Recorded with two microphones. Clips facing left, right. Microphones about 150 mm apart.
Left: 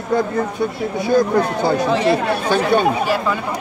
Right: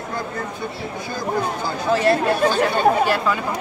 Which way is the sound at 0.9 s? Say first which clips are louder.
Left 10 dB; 65° left (ahead or behind).